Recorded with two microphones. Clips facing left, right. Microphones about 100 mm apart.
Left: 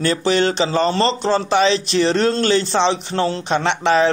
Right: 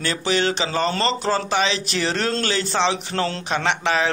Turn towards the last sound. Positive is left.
turn(degrees=35)  # may be behind; listen again after turning